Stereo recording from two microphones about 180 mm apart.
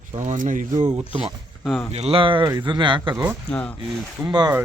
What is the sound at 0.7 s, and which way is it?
Speech, 20° right (ahead or behind).